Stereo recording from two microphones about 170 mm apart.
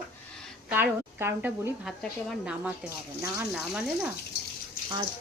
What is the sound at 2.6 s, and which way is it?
Speech, 15° right (ahead or behind).